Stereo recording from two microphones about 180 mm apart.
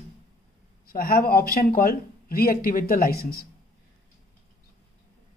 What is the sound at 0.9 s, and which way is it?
Speech, 55° left (ahead or behind).